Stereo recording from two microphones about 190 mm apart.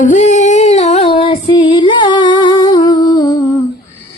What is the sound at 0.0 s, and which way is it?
Female singing, 40° left (ahead or behind).